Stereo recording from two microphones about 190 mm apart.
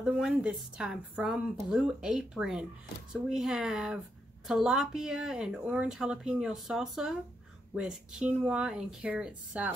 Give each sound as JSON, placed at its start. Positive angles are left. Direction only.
{"t": 0.2, "sound": "speech", "side_deg": -5}